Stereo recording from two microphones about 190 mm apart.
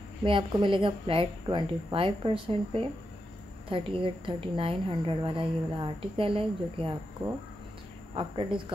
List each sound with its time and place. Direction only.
0.2 s speech: 25° right (ahead or behind)
8.1 s speech: 25° right (ahead or behind)